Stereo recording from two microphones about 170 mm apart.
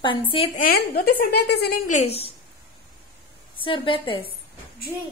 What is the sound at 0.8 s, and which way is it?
A woman's voice, 65° left (ahead or behind).